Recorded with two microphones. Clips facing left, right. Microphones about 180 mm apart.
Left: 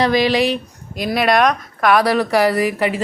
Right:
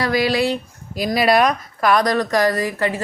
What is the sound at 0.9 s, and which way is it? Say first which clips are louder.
Speech: even; centre (ahead or behind).